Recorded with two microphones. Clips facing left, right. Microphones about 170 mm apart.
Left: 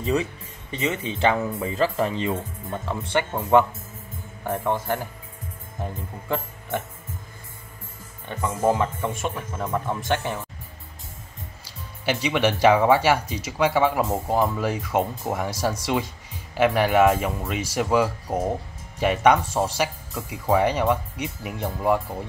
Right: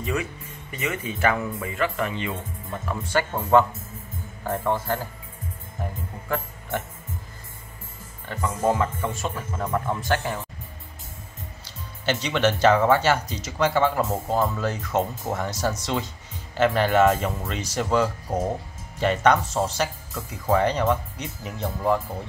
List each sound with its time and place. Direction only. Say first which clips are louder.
0.0 s speech: left 4 dB; 30° left (ahead or behind)
4.5 s speech: even; 15° left (ahead or behind)
6.2 s speech: left 1 dB; 20° left (ahead or behind)
8.3 s speech: left 1 dB; 20° left (ahead or behind)
12.1 s speech: even; 10° left (ahead or behind)